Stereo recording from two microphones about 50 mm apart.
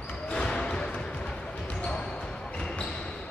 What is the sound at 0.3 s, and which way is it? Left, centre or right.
Basketball bounce, centre.